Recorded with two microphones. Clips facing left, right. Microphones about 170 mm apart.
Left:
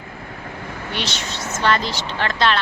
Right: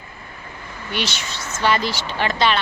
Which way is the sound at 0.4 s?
70° left (ahead or behind).